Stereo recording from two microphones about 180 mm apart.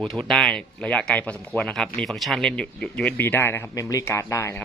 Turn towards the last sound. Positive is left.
turn(degrees=15)  # may be behind; listen again after turning